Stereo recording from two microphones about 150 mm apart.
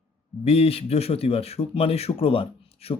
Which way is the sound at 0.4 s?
40° left (ahead or behind).